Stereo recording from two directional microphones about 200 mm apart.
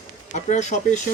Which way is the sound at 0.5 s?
35° left (ahead or behind).